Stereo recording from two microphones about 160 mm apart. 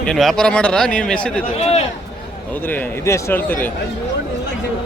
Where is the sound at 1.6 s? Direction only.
45° left (ahead or behind).